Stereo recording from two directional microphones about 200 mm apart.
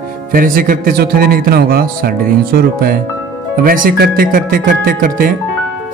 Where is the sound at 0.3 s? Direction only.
45° right (ahead or behind).